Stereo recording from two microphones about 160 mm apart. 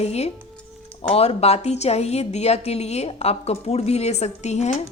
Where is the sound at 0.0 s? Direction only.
40° left (ahead or behind).